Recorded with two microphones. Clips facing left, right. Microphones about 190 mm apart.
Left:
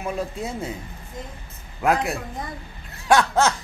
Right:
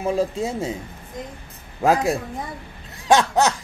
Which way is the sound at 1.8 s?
30° right (ahead or behind).